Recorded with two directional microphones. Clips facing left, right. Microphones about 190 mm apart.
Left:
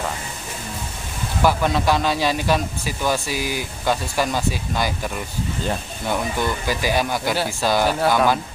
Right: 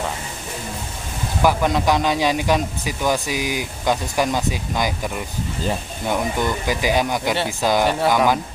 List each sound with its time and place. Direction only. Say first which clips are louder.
1.4 s a man's voice: right 1 dB; 15° right (ahead or behind)
7.8 s speech: right 1 dB; centre (ahead or behind)
8.1 s a man's voice: even; 15° right (ahead or behind)